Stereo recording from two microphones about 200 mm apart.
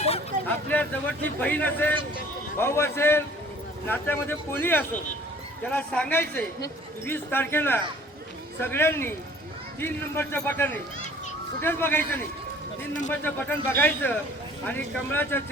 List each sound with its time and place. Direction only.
0.4 s speech: 10° left (ahead or behind)